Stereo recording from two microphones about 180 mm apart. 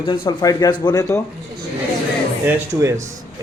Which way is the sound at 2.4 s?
15° right (ahead or behind).